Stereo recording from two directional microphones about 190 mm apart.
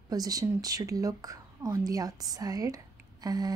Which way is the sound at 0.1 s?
20° right (ahead or behind).